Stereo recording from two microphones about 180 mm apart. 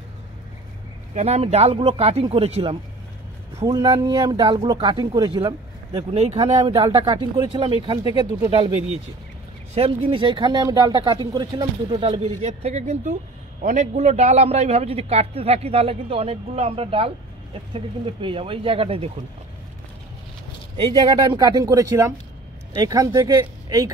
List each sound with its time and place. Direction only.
1.1 s a man's voice: 35° right (ahead or behind)
6.1 s a man's voice: 35° right (ahead or behind)
20.7 s speech: 30° right (ahead or behind)